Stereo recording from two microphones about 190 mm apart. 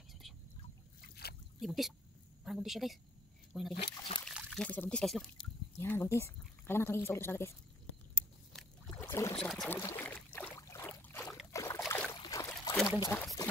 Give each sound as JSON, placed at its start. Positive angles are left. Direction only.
{"t": 1.0, "sound": "a sound", "side_deg": 55}
{"t": 1.6, "sound": "speech", "side_deg": 0}
{"t": 3.7, "sound": "speech", "side_deg": 30}
{"t": 4.3, "sound": "a sound", "side_deg": -5}
{"t": 4.6, "sound": "speech", "side_deg": 5}
{"t": 9.0, "sound": "boat", "side_deg": 15}
{"t": 9.4, "sound": "trickle", "side_deg": 5}
{"t": 11.5, "sound": "boat", "side_deg": 15}
{"t": 12.2, "sound": "a sound", "side_deg": 20}
{"t": 12.9, "sound": "speech", "side_deg": 20}